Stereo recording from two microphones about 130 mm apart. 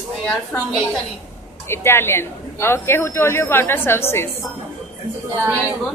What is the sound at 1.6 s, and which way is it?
A man's voice, 20° left (ahead or behind).